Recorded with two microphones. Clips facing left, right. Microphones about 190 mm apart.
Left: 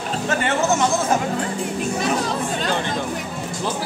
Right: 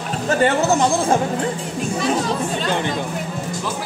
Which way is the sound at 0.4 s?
35° right (ahead or behind).